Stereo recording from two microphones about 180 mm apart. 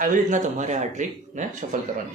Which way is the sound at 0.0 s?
45° right (ahead or behind).